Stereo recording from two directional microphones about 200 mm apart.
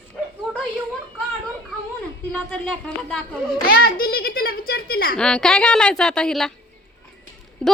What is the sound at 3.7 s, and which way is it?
A child's voice, 50° left (ahead or behind).